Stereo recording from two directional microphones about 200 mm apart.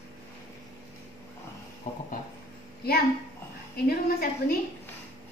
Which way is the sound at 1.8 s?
35° left (ahead or behind).